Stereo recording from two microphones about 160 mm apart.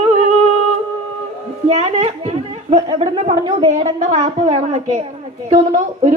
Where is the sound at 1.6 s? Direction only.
45° right (ahead or behind).